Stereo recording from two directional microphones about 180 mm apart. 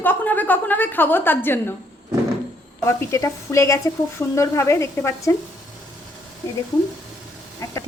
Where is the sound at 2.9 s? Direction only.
15° left (ahead or behind).